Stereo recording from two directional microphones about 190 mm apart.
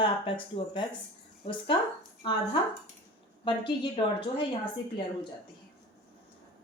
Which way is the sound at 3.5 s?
25° left (ahead or behind).